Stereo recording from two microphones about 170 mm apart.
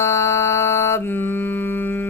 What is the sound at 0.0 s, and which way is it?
Music, 15° left (ahead or behind).